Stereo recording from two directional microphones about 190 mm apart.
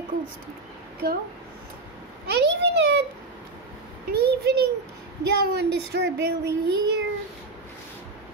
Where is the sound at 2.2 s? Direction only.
60° right (ahead or behind).